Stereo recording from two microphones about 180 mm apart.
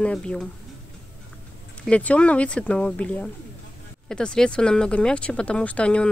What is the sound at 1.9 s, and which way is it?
Speech, 5° left (ahead or behind).